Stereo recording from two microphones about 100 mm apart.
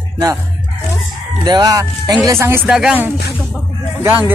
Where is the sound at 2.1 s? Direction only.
35° right (ahead or behind).